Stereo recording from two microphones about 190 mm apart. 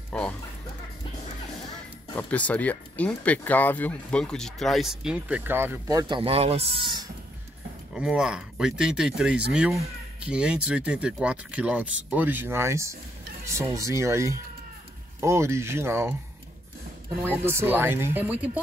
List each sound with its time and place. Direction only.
2.1 s speech: 5° left (ahead or behind); by 7.1 s 30° right (ahead or behind)
7.9 s speech: 5° right (ahead or behind)
17.2 s speech: 10° right (ahead or behind)